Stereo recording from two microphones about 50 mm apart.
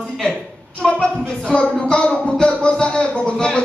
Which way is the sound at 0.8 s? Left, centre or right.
Left.